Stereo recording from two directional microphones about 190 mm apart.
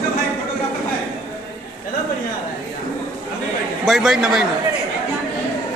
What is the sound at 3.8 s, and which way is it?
Speech, centre (ahead or behind).